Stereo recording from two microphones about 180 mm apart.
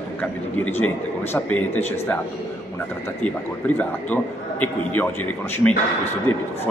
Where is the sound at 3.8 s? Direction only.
10° left (ahead or behind).